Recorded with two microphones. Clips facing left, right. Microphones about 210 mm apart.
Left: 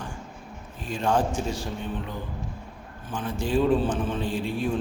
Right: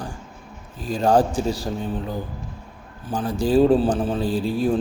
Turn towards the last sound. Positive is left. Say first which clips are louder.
# right 6 dB
turn(degrees=-35)  # may be behind; listen again after turning